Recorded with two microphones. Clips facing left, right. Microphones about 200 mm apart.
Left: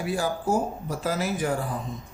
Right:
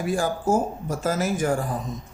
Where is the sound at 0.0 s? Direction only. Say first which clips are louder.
Right 3 dB; 50° right (ahead or behind).